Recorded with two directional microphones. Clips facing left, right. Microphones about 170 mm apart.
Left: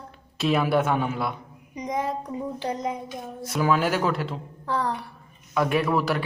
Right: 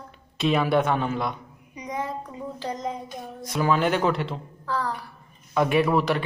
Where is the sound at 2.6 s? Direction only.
10° left (ahead or behind).